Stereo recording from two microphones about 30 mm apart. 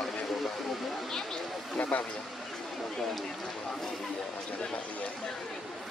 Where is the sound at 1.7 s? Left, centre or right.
Left.